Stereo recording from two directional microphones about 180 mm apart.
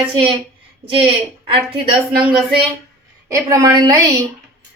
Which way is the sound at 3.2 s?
20° right (ahead or behind).